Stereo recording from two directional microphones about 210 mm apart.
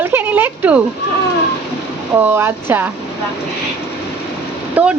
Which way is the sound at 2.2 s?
10° right (ahead or behind).